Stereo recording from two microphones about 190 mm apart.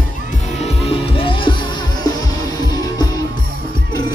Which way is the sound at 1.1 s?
25° left (ahead or behind).